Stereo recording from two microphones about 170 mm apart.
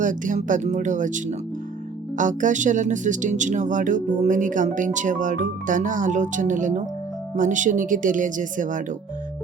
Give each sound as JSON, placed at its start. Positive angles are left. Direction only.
{"t": 0.0, "sound": "speech", "side_deg": -50}